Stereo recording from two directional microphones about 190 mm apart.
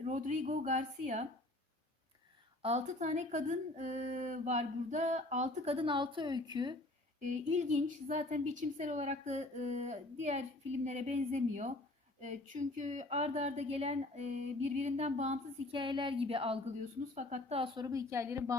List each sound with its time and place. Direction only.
0.0 s speech: 40° right (ahead or behind)
2.6 s speech: 35° right (ahead or behind)
7.2 s speech: 35° right (ahead or behind); by 18.5 s 15° right (ahead or behind)